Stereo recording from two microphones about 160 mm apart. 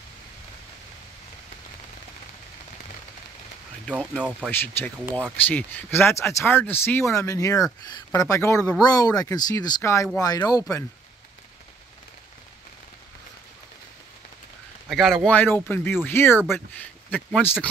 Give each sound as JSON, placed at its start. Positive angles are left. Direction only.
{"t": 3.9, "sound": "speech", "side_deg": -5}
{"t": 4.5, "sound": "speech", "side_deg": 15}
{"t": 14.9, "sound": "speech", "side_deg": 0}
{"t": 15.3, "sound": "speech", "side_deg": 10}